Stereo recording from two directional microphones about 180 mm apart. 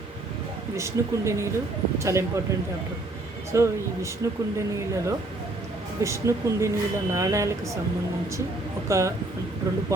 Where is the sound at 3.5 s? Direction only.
15° right (ahead or behind).